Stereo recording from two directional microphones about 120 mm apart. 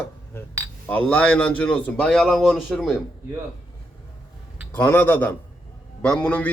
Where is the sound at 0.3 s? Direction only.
20° left (ahead or behind); by 2.9 s centre (ahead or behind).